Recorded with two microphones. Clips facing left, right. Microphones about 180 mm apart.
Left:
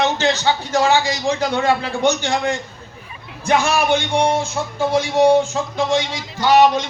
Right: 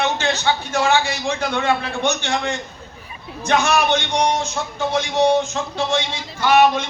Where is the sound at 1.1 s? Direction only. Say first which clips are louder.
Left 3 dB; 35° left (ahead or behind).